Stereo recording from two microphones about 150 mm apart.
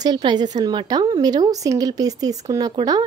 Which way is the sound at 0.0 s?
30° right (ahead or behind).